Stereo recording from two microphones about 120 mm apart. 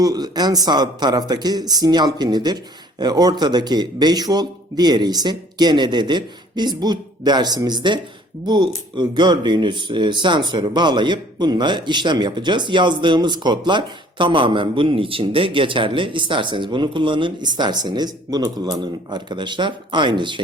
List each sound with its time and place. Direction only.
0.0 s speech: 35° right (ahead or behind)